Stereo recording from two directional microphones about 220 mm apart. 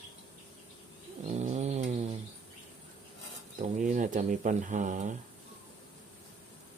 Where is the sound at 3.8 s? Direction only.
35° right (ahead or behind).